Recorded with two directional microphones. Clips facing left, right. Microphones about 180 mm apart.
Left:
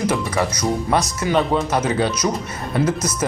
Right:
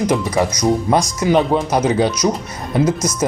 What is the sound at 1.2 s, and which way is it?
Speech, 10° right (ahead or behind).